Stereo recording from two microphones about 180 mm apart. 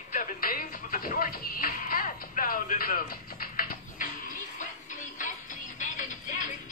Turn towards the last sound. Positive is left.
turn(degrees=45)  # may be behind; listen again after turning